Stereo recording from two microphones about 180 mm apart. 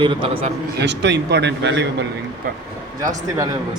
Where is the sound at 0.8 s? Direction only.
75° right (ahead or behind).